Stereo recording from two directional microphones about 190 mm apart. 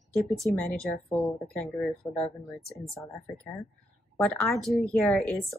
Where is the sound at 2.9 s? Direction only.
15° left (ahead or behind).